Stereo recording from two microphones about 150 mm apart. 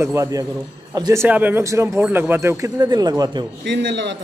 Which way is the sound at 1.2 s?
10° right (ahead or behind).